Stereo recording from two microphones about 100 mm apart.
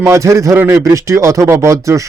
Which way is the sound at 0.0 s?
30° right (ahead or behind).